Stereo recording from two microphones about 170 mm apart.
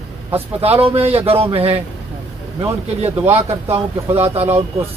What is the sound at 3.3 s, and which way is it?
Speech, 35° right (ahead or behind).